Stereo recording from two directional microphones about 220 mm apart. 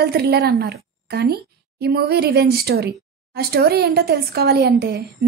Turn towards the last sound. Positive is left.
turn(degrees=-45)  # may be behind; listen again after turning